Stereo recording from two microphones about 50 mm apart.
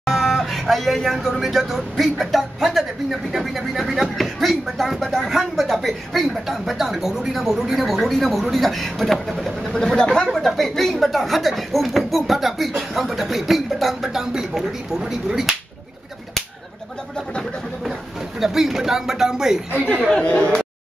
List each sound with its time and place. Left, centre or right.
0.0 s speech: centre
9.8 s speech: centre
18.4 s speech: centre
20.1 s speech: left